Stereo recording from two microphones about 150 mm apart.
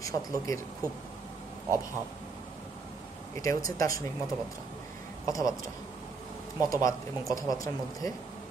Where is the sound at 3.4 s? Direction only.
25° left (ahead or behind).